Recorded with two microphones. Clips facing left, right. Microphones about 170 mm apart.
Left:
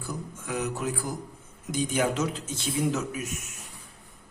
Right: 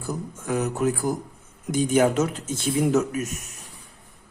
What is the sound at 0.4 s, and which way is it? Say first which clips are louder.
A man's voice: right 7 dB; 45° right (ahead or behind).